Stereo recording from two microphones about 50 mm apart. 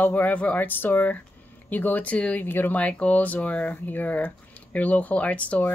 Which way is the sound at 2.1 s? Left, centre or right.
Left.